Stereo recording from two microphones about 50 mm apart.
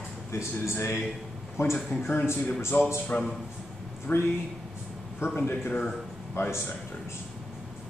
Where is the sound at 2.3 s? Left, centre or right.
Left.